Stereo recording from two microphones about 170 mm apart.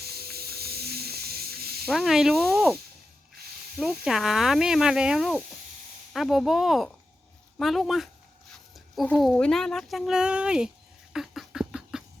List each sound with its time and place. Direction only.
0.0 s snake: 65° right (ahead or behind)
1.9 s speech: centre (ahead or behind)
3.8 s speech: 5° right (ahead or behind)
11.1 s a sound: centre (ahead or behind)